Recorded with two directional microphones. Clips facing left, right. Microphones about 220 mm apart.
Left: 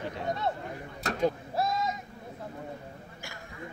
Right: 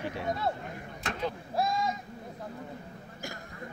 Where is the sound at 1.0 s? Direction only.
40° left (ahead or behind).